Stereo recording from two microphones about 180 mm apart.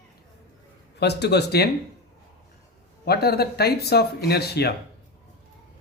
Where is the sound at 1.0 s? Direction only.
70° left (ahead or behind).